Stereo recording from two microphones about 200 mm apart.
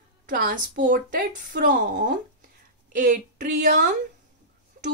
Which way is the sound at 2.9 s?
45° right (ahead or behind).